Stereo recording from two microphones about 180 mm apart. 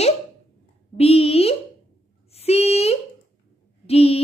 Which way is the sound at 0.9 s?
35° left (ahead or behind).